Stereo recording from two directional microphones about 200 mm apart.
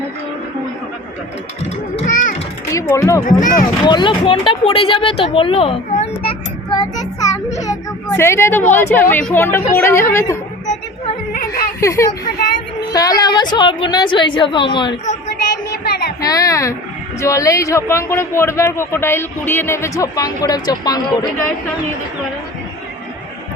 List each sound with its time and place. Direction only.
2.7 s speech: 15° left (ahead or behind)
3.2 s speech: 40° left (ahead or behind)
3.8 s speech: 25° left (ahead or behind)
6.7 s a man's voice: 20° left (ahead or behind)
11.3 s a sound: 50° left (ahead or behind)
11.8 s a man's voice: 15° left (ahead or behind)
15.8 s child singing: 50° left (ahead or behind)
16.2 s a man's voice: 15° left (ahead or behind)